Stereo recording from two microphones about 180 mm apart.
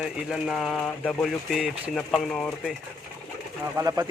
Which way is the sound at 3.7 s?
15° right (ahead or behind).